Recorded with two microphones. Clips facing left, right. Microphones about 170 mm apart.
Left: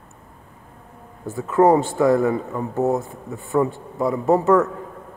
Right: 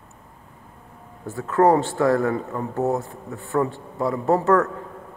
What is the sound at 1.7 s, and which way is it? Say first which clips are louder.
A man's voice: left 2 dB; 5° left (ahead or behind).